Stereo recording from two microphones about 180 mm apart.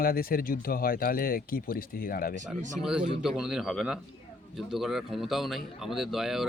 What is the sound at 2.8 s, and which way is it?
Speech, 5° right (ahead or behind).